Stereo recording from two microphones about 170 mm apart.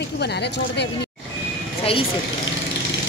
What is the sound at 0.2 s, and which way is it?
Speech, 75° left (ahead or behind).